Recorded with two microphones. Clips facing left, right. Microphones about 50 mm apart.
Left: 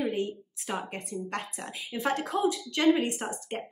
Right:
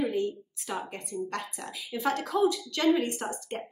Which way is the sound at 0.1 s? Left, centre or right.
Left.